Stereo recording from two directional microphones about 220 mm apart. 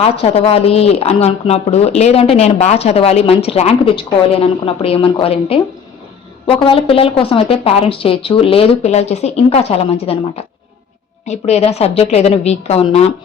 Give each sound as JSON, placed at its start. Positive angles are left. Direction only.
{"t": 0.0, "sound": "a woman's voice", "side_deg": 25}